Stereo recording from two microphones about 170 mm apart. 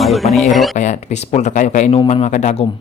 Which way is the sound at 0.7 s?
45° left (ahead or behind).